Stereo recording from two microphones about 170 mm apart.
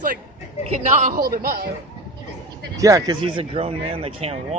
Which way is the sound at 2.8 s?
20° right (ahead or behind).